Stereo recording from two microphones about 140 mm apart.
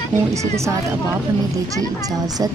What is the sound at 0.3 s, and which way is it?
Speech, 20° right (ahead or behind).